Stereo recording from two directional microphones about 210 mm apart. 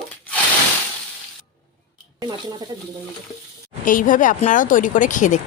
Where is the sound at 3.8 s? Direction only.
40° left (ahead or behind).